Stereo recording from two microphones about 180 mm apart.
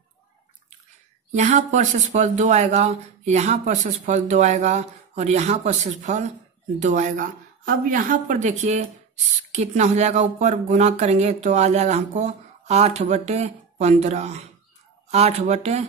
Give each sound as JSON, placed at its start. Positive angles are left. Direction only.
{"t": 1.3, "sound": "speech", "side_deg": -40}